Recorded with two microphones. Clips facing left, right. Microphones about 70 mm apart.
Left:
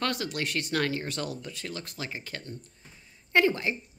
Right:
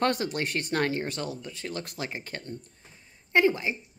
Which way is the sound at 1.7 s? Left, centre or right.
Right.